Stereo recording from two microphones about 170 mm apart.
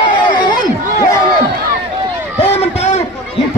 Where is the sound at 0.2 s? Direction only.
25° left (ahead or behind).